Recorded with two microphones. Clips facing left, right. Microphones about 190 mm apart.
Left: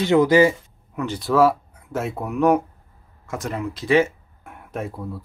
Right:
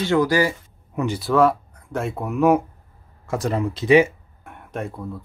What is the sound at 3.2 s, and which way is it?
Speech, 35° right (ahead or behind).